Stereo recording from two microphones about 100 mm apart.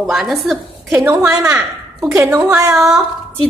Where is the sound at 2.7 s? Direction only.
5° right (ahead or behind).